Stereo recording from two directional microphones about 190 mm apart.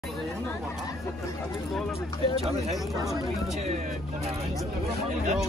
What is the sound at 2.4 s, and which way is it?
Speech, 35° right (ahead or behind).